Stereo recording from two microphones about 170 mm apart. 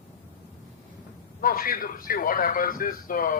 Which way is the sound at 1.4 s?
55° left (ahead or behind).